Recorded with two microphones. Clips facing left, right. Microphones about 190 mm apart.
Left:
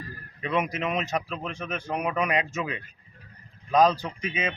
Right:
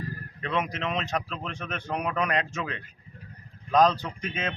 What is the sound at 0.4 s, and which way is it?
A man's voice, 10° left (ahead or behind).